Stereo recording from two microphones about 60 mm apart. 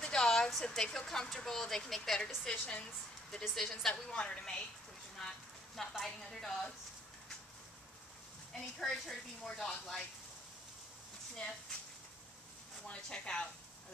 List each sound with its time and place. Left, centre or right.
0.0 s a sound: centre
0.5 s a woman's voice: centre
2.5 s a woman's voice: left
3.3 s a woman's voice: centre
5.8 s speech: centre
8.7 s speech: centre
12.8 s a woman's voice: centre